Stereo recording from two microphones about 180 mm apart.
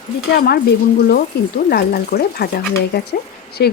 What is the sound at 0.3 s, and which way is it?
Speech, 60° left (ahead or behind).